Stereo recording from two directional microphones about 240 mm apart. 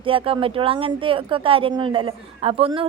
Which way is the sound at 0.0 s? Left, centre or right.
Right.